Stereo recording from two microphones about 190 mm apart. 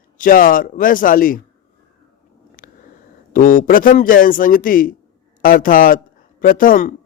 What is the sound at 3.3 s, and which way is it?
Speech, 45° left (ahead or behind).